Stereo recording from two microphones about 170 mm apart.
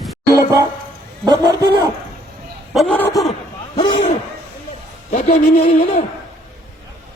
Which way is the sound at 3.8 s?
25° left (ahead or behind).